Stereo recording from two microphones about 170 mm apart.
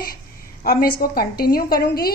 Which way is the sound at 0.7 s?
60° left (ahead or behind).